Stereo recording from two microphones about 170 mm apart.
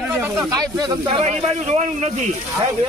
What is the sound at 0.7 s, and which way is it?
A man's voice, 25° right (ahead or behind).